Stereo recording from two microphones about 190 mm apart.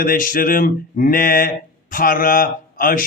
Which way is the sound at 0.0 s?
50° left (ahead or behind).